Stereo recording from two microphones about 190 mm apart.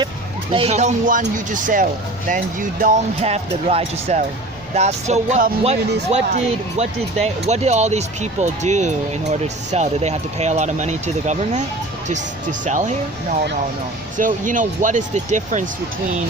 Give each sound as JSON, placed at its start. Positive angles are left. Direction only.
{"t": 0.5, "sound": "speech", "side_deg": -35}
{"t": 3.2, "sound": "speech", "side_deg": -35}
{"t": 14.2, "sound": "speech", "side_deg": -45}